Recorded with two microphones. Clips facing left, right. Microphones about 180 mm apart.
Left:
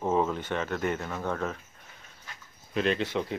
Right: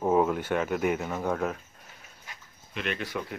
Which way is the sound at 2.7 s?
30° left (ahead or behind).